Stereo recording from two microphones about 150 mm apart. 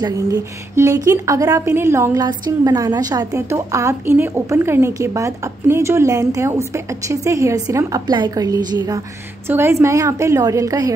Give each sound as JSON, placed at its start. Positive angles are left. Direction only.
{"t": 0.0, "sound": "a woman's voice", "side_deg": -20}